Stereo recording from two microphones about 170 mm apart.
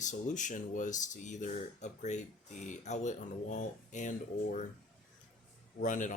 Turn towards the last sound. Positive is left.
turn(degrees=50)  # may be behind; listen again after turning